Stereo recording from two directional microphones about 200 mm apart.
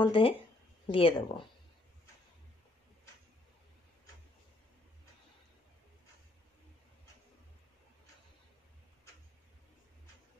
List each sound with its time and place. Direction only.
0.0 s speech: 25° left (ahead or behind)